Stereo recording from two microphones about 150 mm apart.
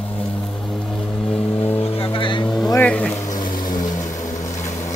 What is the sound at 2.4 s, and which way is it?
Vehicle, 5° left (ahead or behind).